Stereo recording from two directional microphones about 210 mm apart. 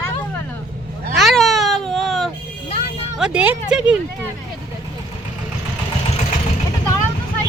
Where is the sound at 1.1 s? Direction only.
Centre (ahead or behind).